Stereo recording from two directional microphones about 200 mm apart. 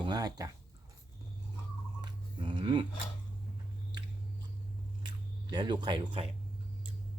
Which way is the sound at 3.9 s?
20° right (ahead or behind).